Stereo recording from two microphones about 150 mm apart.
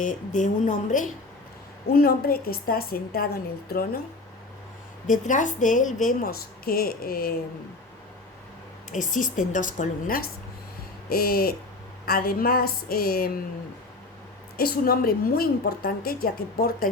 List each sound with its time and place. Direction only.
0.0 s a woman's voice: 60° left (ahead or behind)
1.9 s a woman's voice: 85° left
5.0 s a woman's voice: 60° left (ahead or behind); by 7.3 s 80° left
8.9 s a woman's voice: 60° left (ahead or behind)
11.1 s a woman's voice: 90° left
14.5 s a woman's voice: 90° left